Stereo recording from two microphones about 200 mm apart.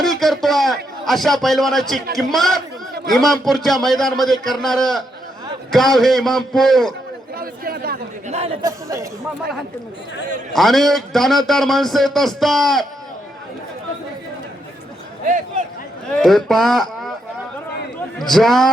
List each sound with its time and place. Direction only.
0.0 s a man's voice: centre (ahead or behind)
7.3 s speech: 50° right (ahead or behind)
8.6 s speech: 15° right (ahead or behind)
10.5 s a man's voice: centre (ahead or behind)
16.1 s a man's voice: centre (ahead or behind)
18.2 s a man's voice: centre (ahead or behind)